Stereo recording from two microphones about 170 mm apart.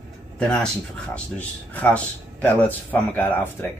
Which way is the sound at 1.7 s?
10° left (ahead or behind).